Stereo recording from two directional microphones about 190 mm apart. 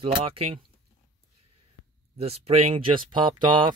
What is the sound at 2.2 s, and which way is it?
Speech, 30° right (ahead or behind).